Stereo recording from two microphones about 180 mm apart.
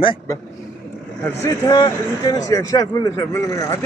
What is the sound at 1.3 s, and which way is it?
Speech, 15° left (ahead or behind).